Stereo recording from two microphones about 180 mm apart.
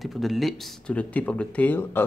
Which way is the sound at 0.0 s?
Centre (ahead or behind).